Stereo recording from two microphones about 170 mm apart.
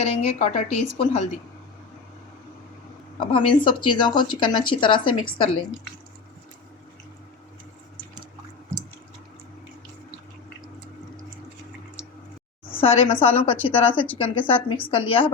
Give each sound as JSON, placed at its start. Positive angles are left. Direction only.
{"t": 0.0, "sound": "a woman's voice", "side_deg": 40}
{"t": 3.2, "sound": "speech", "side_deg": 30}
{"t": 12.8, "sound": "a woman's voice", "side_deg": 35}